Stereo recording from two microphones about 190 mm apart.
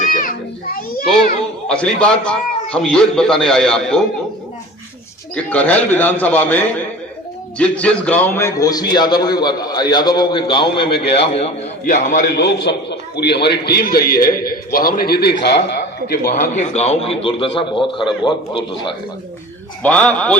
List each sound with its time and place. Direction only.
0.0 s children playing: 45° left (ahead or behind)
1.6 s a man's voice: 5° left (ahead or behind)
5.3 s a man's voice: 10° left (ahead or behind); by 12.2 s 45° left (ahead or behind)
12.4 s a man's voice: 60° left (ahead or behind)
16.0 s a man's voice: 50° left (ahead or behind); by 18.6 s 25° left (ahead or behind)
19.8 s a man's voice: 5° left (ahead or behind)